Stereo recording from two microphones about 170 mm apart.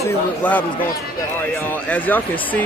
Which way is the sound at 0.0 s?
10° left (ahead or behind).